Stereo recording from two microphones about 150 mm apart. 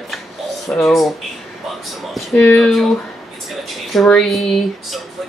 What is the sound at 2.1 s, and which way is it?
Speech, 5° left (ahead or behind).